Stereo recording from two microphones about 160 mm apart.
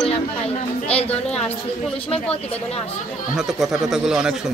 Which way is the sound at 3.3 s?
Centre (ahead or behind).